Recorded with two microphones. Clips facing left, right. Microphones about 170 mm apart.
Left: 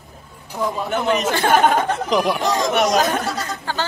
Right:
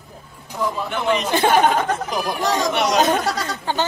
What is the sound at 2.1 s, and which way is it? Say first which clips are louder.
Speech: left 4 dB; 70° left (ahead or behind).